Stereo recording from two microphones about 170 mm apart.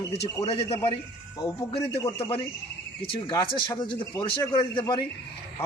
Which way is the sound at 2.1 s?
30° left (ahead or behind).